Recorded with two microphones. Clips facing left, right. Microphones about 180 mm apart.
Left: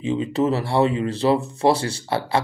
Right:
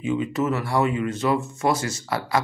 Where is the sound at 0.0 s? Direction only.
30° left (ahead or behind).